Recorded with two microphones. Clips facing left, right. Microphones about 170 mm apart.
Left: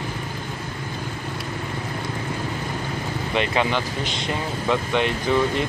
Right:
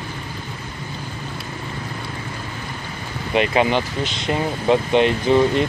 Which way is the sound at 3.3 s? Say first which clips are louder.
Right 5 dB; 15° right (ahead or behind).